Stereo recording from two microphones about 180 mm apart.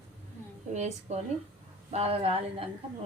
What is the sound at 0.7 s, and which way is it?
A woman's voice, 40° right (ahead or behind).